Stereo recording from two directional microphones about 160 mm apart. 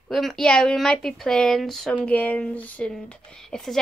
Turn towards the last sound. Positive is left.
turn(degrees=5)  # may be behind; listen again after turning